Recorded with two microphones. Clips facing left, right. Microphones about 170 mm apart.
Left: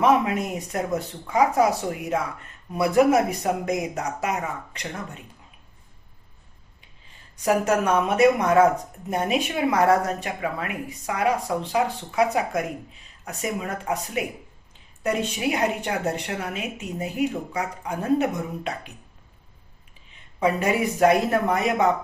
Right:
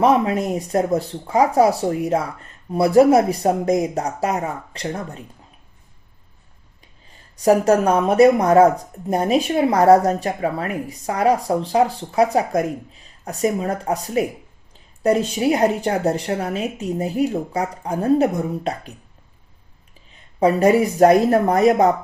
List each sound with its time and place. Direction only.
0.0 s a woman's voice: 35° right (ahead or behind)
7.4 s a woman's voice: 35° right (ahead or behind)
20.4 s a woman's voice: 40° right (ahead or behind)